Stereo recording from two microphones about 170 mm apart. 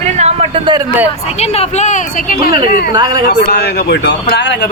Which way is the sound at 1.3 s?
35° left (ahead or behind).